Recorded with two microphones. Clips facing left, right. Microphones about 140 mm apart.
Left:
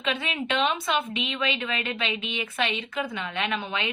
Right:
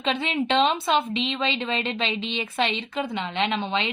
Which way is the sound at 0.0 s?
30° right (ahead or behind).